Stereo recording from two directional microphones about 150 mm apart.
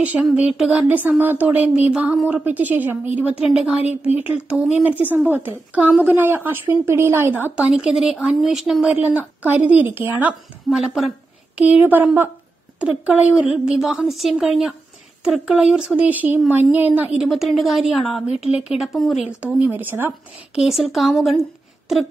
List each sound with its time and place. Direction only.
0.0 s speech: 10° right (ahead or behind)
3.8 s speech: 45° left (ahead or behind)
4.2 s a woman's voice: 10° right (ahead or behind)
18.3 s speech: 45° left (ahead or behind)
18.8 s a woman's voice: centre (ahead or behind)
19.4 s speech: 10° right (ahead or behind)
20.5 s a woman's voice: centre (ahead or behind)